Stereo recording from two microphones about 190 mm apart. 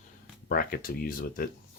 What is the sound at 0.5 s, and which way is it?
Speech, 50° left (ahead or behind).